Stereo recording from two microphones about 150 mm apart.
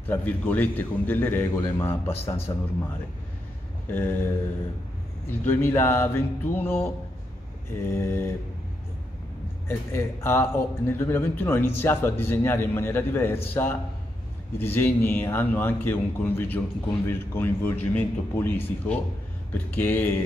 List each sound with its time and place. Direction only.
0.0 s a man's voice: 10° left (ahead or behind)
3.9 s speech: 15° left (ahead or behind)
7.9 s speech: 15° left (ahead or behind)
9.7 s speech: 15° left (ahead or behind)